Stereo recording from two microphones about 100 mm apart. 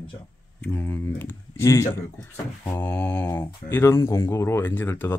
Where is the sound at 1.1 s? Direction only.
30° left (ahead or behind).